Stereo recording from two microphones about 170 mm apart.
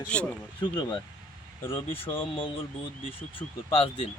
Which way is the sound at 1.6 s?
15° left (ahead or behind).